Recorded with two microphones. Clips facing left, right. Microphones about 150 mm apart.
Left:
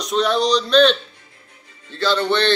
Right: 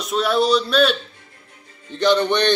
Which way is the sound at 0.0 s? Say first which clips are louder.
Even; 5° right (ahead or behind).